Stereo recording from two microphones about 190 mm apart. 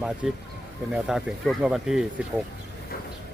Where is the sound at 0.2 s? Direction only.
Centre (ahead or behind).